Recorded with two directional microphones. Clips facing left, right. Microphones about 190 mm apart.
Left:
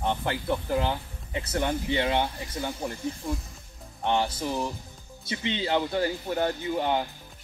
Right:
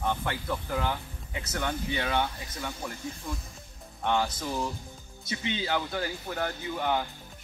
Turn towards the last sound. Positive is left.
turn(degrees=25)  # may be behind; listen again after turning